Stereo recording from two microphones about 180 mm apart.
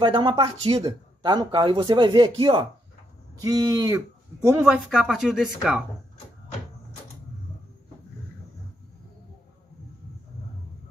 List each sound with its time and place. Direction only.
0.0 s a man's voice: 25° right (ahead or behind)
4.6 s a woman's voice: 5° right (ahead or behind)